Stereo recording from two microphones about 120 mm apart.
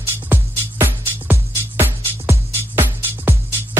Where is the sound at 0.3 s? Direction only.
15° right (ahead or behind).